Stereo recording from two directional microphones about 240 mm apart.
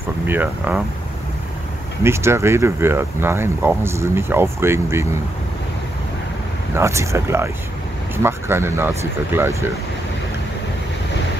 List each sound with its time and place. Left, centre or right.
0.3 s speech: centre
2.0 s speech: centre
6.7 s speech: centre